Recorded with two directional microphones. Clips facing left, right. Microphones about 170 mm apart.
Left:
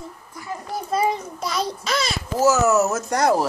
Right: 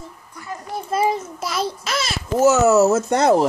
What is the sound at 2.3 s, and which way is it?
Speech, 25° right (ahead or behind).